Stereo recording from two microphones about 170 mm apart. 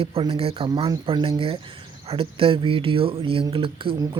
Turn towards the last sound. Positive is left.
turn(degrees=-25)  # may be behind; listen again after turning